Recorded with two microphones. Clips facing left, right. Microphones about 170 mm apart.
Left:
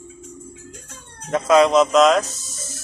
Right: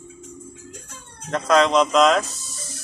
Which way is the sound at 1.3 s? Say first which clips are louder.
Left 3 dB; 5° left (ahead or behind).